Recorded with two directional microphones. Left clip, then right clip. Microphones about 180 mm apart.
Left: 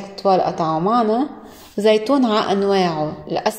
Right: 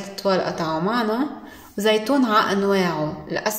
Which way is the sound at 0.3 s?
30° left (ahead or behind).